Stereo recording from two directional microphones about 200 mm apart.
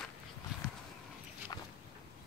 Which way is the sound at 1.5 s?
20° left (ahead or behind).